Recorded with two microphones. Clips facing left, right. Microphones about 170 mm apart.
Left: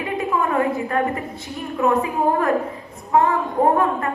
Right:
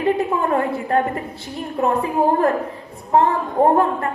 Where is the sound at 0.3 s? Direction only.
30° right (ahead or behind).